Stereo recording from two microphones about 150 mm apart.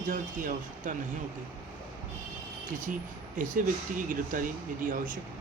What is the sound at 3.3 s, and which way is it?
Speech, 65° right (ahead or behind).